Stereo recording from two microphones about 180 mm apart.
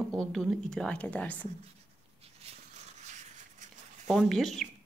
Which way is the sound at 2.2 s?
35° right (ahead or behind).